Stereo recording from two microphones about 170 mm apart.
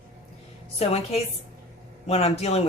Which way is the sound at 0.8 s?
35° left (ahead or behind).